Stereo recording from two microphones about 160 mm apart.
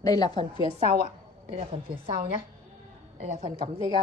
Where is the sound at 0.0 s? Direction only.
25° left (ahead or behind).